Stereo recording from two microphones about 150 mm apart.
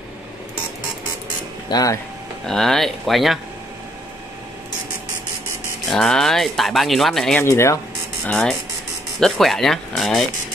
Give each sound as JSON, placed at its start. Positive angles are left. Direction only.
{"t": 1.7, "sound": "speech", "side_deg": 25}
{"t": 2.4, "sound": "speech", "side_deg": 5}
{"t": 5.9, "sound": "speech", "side_deg": 5}
{"t": 7.3, "sound": "speech", "side_deg": 15}
{"t": 8.3, "sound": "speech", "side_deg": 5}